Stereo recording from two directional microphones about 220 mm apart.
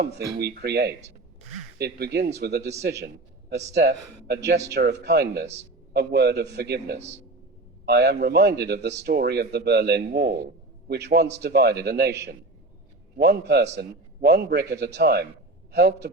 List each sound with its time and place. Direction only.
0.3 s speech: 45° right (ahead or behind)
3.8 s speech: 50° right (ahead or behind)
13.1 s speech: 50° right (ahead or behind)